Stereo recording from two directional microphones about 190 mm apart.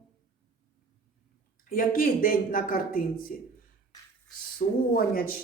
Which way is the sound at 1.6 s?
50° left (ahead or behind).